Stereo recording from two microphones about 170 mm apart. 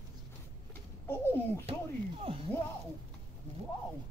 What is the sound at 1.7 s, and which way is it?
Speech, 35° right (ahead or behind).